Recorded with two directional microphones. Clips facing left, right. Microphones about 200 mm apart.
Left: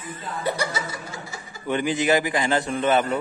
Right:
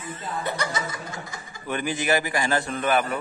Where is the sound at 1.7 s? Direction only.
20° left (ahead or behind).